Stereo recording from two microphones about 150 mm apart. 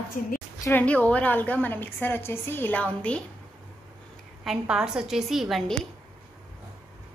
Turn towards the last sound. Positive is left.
turn(degrees=0)  # may be behind; listen again after turning